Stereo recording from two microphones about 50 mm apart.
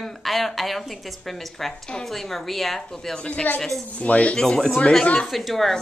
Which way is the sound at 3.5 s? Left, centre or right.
Left.